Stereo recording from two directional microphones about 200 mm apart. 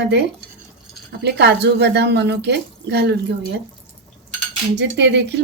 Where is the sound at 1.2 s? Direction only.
55° right (ahead or behind).